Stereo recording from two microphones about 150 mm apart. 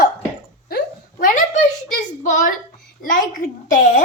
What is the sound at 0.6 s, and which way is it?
Hiccup, 80° left.